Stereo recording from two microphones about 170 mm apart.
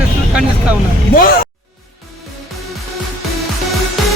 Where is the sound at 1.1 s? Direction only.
55° left (ahead or behind).